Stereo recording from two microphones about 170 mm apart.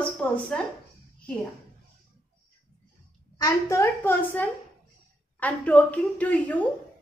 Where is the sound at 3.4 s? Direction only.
15° left (ahead or behind).